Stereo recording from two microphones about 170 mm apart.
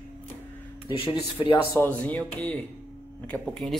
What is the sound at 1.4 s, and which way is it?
Speech, 20° left (ahead or behind).